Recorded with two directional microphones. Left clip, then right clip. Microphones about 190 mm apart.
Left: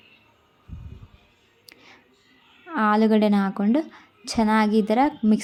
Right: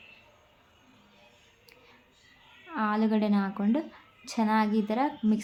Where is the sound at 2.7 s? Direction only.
35° left (ahead or behind).